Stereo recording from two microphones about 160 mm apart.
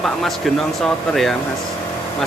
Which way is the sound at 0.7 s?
Centre (ahead or behind).